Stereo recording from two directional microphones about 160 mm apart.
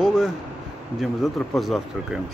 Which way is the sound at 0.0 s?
5° right (ahead or behind).